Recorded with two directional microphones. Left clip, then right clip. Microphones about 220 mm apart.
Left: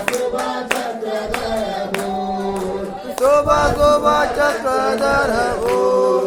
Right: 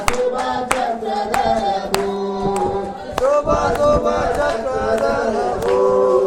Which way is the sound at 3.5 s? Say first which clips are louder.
Left 2 dB; 45° left (ahead or behind).